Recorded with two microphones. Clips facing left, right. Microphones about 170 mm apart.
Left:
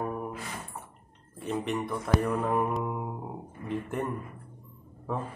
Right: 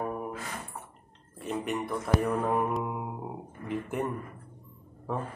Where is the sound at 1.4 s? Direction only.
Centre (ahead or behind).